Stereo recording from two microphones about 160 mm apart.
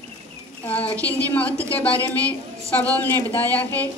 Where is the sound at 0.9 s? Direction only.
10° left (ahead or behind).